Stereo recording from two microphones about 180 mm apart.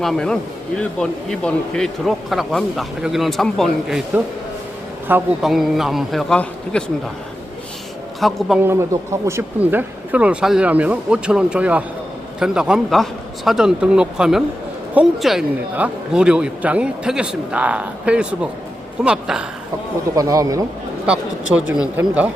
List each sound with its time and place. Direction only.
0.0 s speech: 5° left (ahead or behind)
8.2 s speech: centre (ahead or behind)
8.6 s speech: 15° right (ahead or behind)
20.1 s a man's voice: 20° right (ahead or behind)
21.1 s speech: 5° right (ahead or behind)